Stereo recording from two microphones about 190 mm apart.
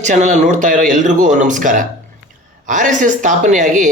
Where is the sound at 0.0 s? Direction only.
40° right (ahead or behind).